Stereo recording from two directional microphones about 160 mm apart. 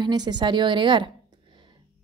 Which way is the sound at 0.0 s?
25° right (ahead or behind).